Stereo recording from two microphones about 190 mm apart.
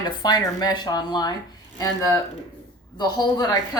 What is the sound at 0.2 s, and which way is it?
Speech, 20° left (ahead or behind).